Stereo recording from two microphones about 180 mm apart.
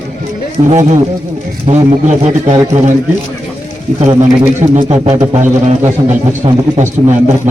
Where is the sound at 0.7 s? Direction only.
40° right (ahead or behind).